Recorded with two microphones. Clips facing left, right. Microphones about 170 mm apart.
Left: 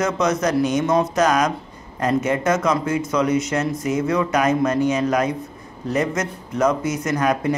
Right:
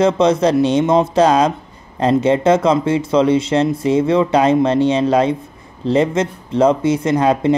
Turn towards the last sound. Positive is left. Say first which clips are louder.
# right 6 dB
turn(degrees=-25)  # may be behind; listen again after turning